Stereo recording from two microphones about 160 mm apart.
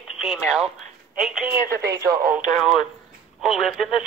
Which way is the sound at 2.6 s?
Centre (ahead or behind).